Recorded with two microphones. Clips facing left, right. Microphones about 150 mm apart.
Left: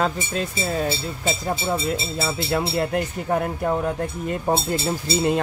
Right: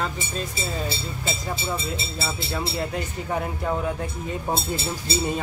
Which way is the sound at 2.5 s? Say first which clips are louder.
Left 6 dB; 65° left (ahead or behind).